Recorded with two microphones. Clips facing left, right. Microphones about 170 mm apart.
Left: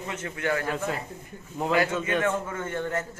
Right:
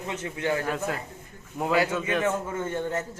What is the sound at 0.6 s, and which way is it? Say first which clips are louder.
Speech: even; 5° right (ahead or behind).